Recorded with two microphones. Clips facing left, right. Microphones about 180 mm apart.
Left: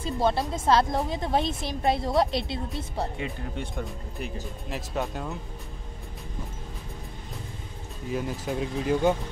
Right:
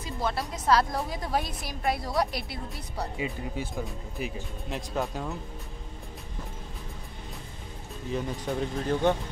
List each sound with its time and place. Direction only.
0.0 s a woman's voice: 25° left (ahead or behind)
3.2 s speech: 5° right (ahead or behind)
8.1 s speech: 5° left (ahead or behind)